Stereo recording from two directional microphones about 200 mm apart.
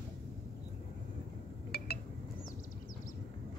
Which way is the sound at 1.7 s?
50° left (ahead or behind).